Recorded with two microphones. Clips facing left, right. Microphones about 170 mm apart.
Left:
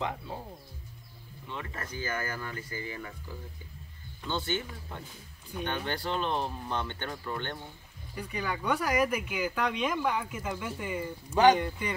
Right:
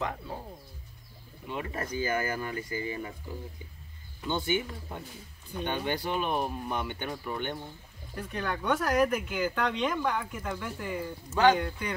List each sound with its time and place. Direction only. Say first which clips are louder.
1.5 s speech: right 5 dB; 15° right (ahead or behind)
8.1 s speech: right 1 dB; 5° left (ahead or behind)